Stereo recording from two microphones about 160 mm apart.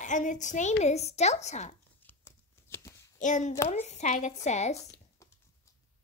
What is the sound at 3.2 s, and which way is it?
A child's voice, 50° left (ahead or behind).